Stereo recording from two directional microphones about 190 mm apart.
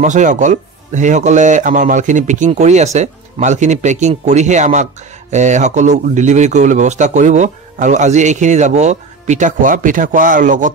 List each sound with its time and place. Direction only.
0.0 s speech: 40° right (ahead or behind)